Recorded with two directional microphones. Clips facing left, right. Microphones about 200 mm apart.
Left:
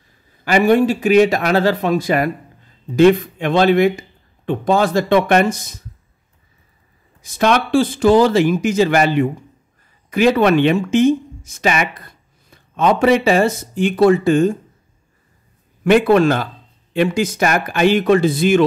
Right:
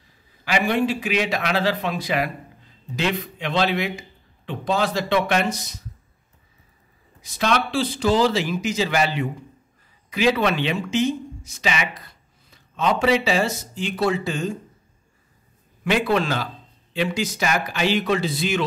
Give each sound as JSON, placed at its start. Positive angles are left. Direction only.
{"t": 0.5, "sound": "speech", "side_deg": 45}
{"t": 7.2, "sound": "speech", "side_deg": 50}
{"t": 15.8, "sound": "speech", "side_deg": 55}